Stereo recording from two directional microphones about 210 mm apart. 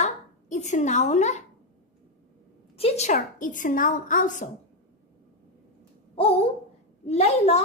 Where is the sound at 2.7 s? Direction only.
30° left (ahead or behind).